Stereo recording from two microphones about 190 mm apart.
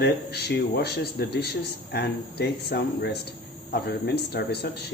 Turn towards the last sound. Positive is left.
turn(degrees=60)  # may be behind; listen again after turning